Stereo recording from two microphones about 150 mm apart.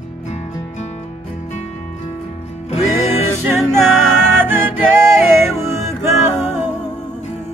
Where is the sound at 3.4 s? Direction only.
Centre (ahead or behind).